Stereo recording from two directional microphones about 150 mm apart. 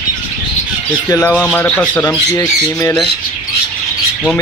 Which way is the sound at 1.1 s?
15° left (ahead or behind).